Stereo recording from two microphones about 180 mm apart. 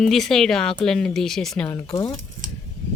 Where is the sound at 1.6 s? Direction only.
25° left (ahead or behind).